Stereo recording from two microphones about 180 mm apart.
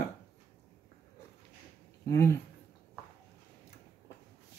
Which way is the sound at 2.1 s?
15° left (ahead or behind).